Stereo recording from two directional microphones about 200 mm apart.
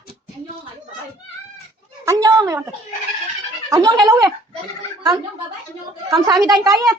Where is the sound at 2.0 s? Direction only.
15° right (ahead or behind).